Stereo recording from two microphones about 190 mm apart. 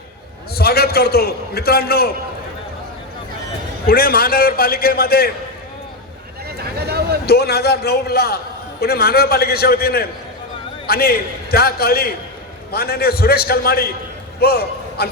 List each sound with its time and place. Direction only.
0.5 s a man's voice: 55° left (ahead or behind)
3.8 s a man's voice: 50° left (ahead or behind)
6.7 s a sound: 55° right (ahead or behind)
7.3 s a man's voice: 55° left (ahead or behind)